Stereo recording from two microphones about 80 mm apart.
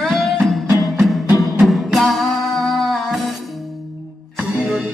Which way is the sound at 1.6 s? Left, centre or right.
Centre.